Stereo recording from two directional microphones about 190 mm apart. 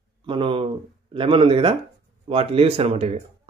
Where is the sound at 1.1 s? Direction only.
30° right (ahead or behind).